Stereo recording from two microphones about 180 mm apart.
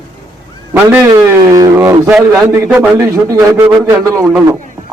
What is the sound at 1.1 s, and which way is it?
A man's voice, 20° right (ahead or behind).